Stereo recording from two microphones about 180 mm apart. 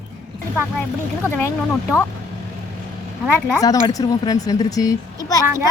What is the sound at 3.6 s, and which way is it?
Speech, 20° left (ahead or behind).